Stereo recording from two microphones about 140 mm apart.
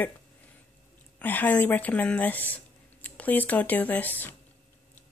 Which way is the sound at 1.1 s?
10° left (ahead or behind).